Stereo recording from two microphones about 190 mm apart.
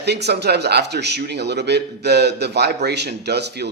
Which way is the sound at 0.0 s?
60° right (ahead or behind).